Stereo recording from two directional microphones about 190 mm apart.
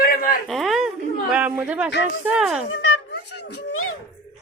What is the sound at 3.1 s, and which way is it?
Speech, 60° left (ahead or behind).